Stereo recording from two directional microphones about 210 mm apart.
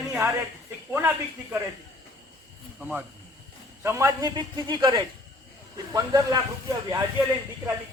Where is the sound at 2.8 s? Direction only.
5° right (ahead or behind).